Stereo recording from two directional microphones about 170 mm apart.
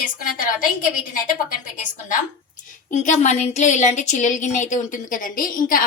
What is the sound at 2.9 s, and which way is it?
A woman's voice, 45° left (ahead or behind).